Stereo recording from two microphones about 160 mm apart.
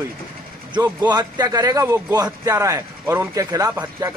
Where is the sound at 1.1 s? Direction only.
25° right (ahead or behind).